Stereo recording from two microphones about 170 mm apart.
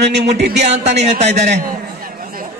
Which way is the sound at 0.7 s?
40° right (ahead or behind).